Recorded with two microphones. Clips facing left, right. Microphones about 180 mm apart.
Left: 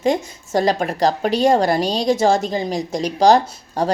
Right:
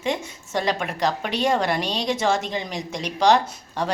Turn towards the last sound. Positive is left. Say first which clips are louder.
# left 6 dB
turn(degrees=35)  # may be behind; listen again after turning